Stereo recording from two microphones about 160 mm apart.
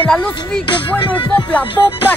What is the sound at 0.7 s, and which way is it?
Music, 30° left (ahead or behind).